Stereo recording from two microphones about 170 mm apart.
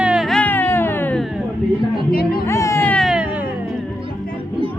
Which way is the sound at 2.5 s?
15° left (ahead or behind).